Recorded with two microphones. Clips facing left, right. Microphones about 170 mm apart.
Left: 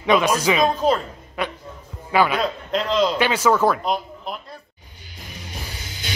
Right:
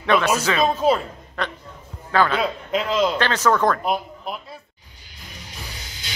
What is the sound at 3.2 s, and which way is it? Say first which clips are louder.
Speech: left 1 dB; 10° left (ahead or behind).